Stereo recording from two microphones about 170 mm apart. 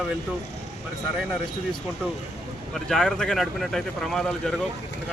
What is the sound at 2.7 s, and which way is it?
Speech, centre (ahead or behind).